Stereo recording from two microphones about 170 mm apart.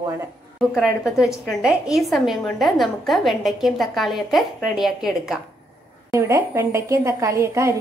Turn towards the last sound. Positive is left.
turn(degrees=-15)  # may be behind; listen again after turning